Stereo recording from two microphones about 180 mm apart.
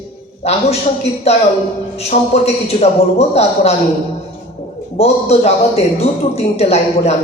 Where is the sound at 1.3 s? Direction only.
35° left (ahead or behind).